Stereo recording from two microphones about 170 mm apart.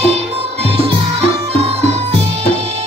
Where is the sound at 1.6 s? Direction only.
35° right (ahead or behind).